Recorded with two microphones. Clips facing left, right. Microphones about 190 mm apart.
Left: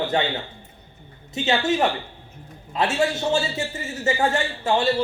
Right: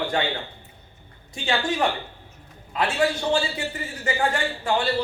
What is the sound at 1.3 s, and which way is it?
A man's voice, 20° left (ahead or behind).